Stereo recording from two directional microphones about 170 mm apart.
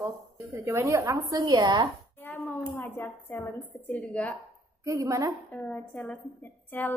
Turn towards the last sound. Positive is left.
turn(degrees=10)  # may be behind; listen again after turning